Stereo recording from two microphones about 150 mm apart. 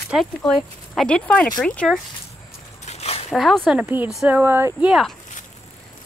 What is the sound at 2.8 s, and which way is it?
Dog, 45° left (ahead or behind).